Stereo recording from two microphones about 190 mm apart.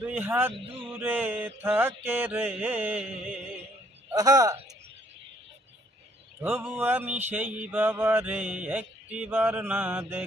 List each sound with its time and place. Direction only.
0.1 s speech: 10° right (ahead or behind)
4.1 s a man's voice: 20° right (ahead or behind)
6.4 s speech: 10° right (ahead or behind)